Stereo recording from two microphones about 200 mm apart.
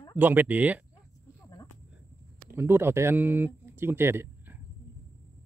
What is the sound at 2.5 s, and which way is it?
Speech, 10° right (ahead or behind).